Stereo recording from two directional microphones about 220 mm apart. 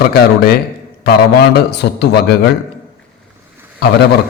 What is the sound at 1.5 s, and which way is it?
Speech, 50° left (ahead or behind).